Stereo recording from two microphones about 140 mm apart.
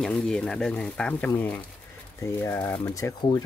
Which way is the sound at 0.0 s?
5° left (ahead or behind).